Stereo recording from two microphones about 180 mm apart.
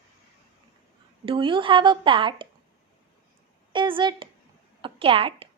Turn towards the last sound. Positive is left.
turn(degrees=-30)  # may be behind; listen again after turning